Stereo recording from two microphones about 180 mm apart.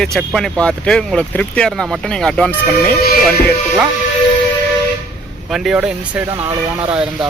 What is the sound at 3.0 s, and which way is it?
Music, 55° left (ahead or behind).